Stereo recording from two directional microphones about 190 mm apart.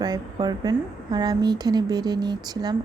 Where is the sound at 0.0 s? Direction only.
20° right (ahead or behind).